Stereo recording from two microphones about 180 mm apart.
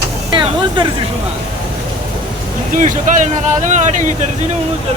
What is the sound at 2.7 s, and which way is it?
Speech, 45° right (ahead or behind).